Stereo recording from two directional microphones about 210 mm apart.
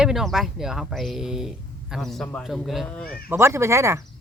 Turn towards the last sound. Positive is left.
turn(degrees=-15)  # may be behind; listen again after turning